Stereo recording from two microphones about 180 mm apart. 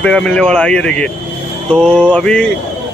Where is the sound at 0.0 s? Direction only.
5° left (ahead or behind).